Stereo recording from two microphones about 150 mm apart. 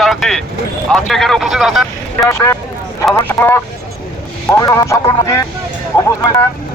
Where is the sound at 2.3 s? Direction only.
15° left (ahead or behind).